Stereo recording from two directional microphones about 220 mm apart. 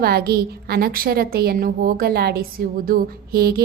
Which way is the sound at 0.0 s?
45° right (ahead or behind).